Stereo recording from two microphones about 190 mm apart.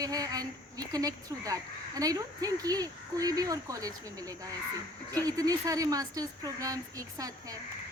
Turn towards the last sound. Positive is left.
turn(degrees=-20)  # may be behind; listen again after turning